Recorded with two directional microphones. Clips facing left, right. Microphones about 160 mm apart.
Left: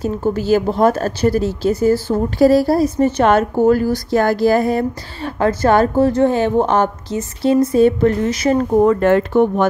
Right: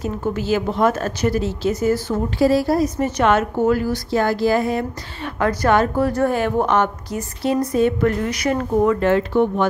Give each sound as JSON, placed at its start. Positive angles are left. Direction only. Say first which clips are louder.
{"t": 0.0, "sound": "a woman's voice", "louder": "left 4 dB", "side_deg": 35}
{"t": 2.3, "sound": "a woman's voice", "louder": "left 4 dB", "side_deg": 40}
{"t": 9.0, "sound": "speech", "louder": "left 4 dB", "side_deg": 50}